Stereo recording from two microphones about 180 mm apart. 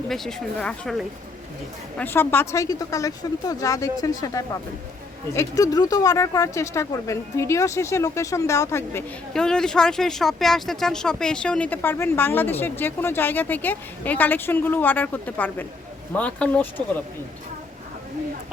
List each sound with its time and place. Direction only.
0.1 s a woman's voice: centre (ahead or behind)
2.0 s speech: 10° left (ahead or behind)
9.3 s speech: 5° left (ahead or behind)